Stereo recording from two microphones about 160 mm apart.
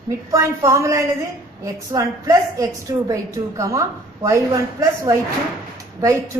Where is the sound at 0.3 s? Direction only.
20° right (ahead or behind).